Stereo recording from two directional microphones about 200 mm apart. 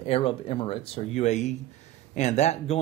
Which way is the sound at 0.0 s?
30° left (ahead or behind).